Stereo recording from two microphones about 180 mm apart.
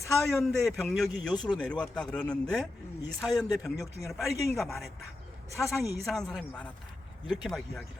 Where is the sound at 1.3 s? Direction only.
25° left (ahead or behind).